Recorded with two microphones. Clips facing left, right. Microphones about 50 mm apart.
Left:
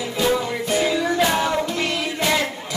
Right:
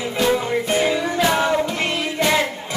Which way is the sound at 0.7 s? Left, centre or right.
Right.